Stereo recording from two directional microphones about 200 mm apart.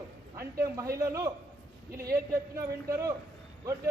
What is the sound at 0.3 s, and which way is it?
Speech, 15° right (ahead or behind).